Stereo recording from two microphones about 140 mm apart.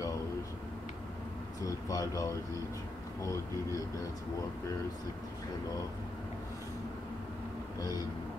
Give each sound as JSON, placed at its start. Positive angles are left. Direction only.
{"t": 1.6, "sound": "speech", "side_deg": 25}